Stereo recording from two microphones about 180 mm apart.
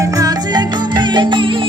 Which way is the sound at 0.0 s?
20° right (ahead or behind).